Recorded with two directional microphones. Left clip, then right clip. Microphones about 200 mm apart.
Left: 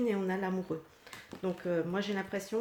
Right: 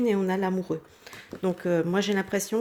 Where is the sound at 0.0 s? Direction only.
35° right (ahead or behind).